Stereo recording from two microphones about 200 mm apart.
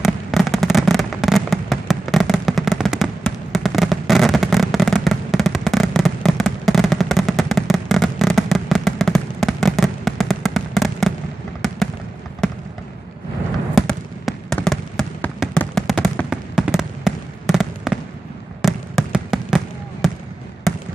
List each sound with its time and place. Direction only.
0.0 s fireworks: centre (ahead or behind)
13.7 s trickle: centre (ahead or behind)
18.6 s fireworks: centre (ahead or behind)